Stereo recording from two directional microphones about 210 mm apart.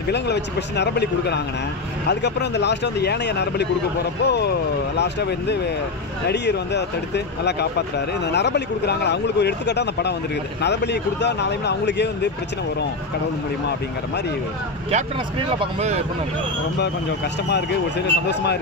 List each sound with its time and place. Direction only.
0.1 s speech: 55° left (ahead or behind)
8.3 s speech: 55° left (ahead or behind)
15.6 s speech: 30° right (ahead or behind)
17.5 s speech: 55° left (ahead or behind)